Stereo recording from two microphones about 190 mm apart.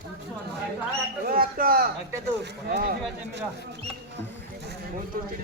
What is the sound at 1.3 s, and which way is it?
Speech, 50° right (ahead or behind).